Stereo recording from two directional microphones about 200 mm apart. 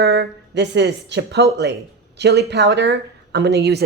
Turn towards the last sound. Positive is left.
turn(degrees=-55)  # may be behind; listen again after turning